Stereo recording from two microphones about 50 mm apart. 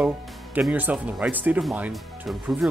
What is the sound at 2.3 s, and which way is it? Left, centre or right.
Speech, centre.